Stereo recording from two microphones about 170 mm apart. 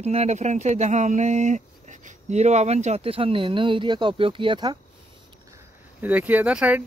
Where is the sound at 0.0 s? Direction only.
40° right (ahead or behind).